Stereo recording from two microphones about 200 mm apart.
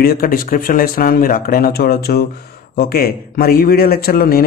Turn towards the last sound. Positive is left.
turn(degrees=50)  # may be behind; listen again after turning